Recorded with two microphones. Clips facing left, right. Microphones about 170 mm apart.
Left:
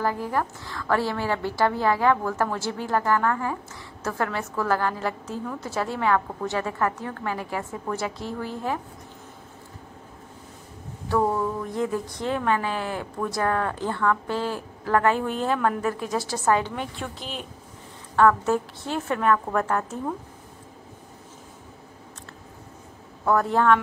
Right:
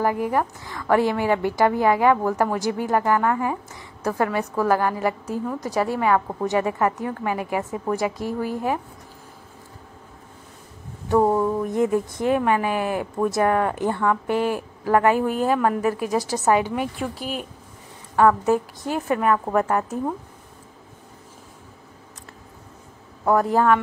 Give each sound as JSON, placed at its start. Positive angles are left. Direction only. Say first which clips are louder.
{"t": 0.0, "sound": "a woman's voice", "louder": "right 4 dB", "side_deg": -15}
{"t": 11.1, "sound": "a sound", "louder": "right 5 dB", "side_deg": -25}
{"t": 12.3, "sound": "a woman's voice", "louder": "right 4 dB", "side_deg": -15}
{"t": 23.4, "sound": "a woman's voice", "louder": "right 1 dB", "side_deg": -5}